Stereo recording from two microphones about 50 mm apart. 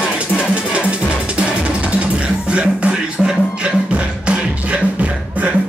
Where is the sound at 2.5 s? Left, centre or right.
Right.